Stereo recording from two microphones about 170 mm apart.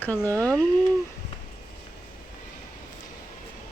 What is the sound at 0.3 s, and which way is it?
Speech, 15° right (ahead or behind).